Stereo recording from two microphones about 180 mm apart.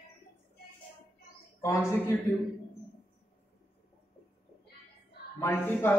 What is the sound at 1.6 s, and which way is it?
Speech, 20° left (ahead or behind).